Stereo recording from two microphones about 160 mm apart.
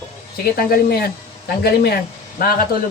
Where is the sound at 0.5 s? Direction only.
75° left (ahead or behind).